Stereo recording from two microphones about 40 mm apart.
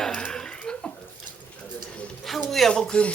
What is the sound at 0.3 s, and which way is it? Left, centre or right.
Chuckle, left.